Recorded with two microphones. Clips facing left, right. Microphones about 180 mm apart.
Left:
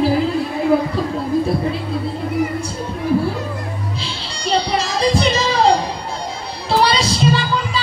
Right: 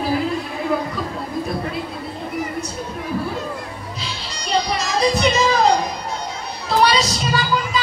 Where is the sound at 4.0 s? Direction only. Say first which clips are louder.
Left 4 dB; 30° left (ahead or behind).